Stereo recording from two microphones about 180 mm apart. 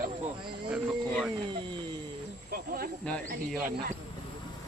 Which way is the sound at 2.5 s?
55° right (ahead or behind).